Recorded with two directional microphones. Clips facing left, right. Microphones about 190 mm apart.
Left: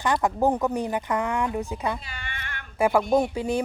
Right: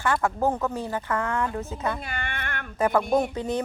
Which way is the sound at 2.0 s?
55° right (ahead or behind).